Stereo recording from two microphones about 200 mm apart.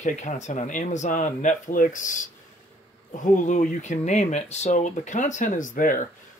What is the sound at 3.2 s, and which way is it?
Speech, 40° left (ahead or behind).